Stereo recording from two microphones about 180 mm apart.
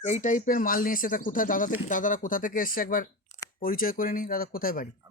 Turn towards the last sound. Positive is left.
turn(degrees=50)  # may be behind; listen again after turning